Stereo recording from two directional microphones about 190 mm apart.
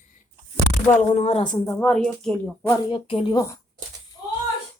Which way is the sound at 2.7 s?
25° left (ahead or behind).